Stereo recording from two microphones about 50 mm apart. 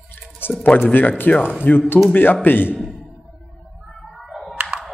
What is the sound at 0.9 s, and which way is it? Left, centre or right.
A man's voice, left.